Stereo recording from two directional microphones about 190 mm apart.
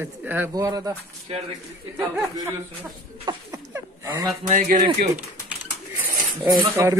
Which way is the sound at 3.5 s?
15° right (ahead or behind).